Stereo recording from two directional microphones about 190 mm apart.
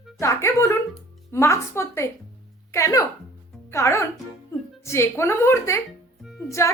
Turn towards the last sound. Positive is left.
turn(degrees=0)  # may be behind; listen again after turning